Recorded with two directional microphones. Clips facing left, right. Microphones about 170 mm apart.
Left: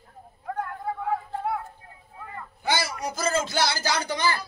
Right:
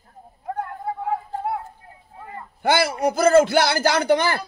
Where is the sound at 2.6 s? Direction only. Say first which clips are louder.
Right 8 dB; 60° right (ahead or behind).